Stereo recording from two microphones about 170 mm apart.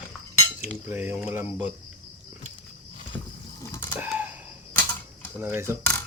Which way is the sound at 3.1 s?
5° left (ahead or behind).